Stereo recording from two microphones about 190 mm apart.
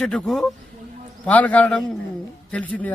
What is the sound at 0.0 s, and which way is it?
A man's voice, centre (ahead or behind).